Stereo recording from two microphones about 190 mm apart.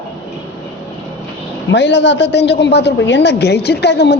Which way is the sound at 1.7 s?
70° left (ahead or behind).